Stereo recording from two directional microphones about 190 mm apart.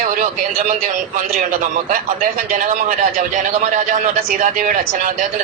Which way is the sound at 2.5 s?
45° right (ahead or behind).